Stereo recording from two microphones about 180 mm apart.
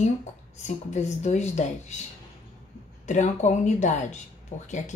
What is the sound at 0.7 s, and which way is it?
Speech, 40° left (ahead or behind).